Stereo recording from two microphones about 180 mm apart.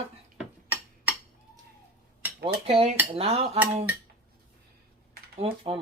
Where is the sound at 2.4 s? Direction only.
30° right (ahead or behind).